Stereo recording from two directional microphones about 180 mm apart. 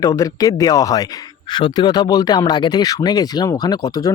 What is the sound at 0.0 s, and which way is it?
Speech, 20° left (ahead or behind).